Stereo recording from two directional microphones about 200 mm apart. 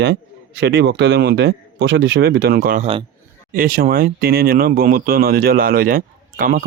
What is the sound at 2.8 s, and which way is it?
Speech, 30° right (ahead or behind).